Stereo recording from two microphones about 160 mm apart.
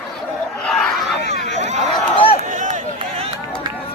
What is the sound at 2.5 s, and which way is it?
Run, 50° right (ahead or behind).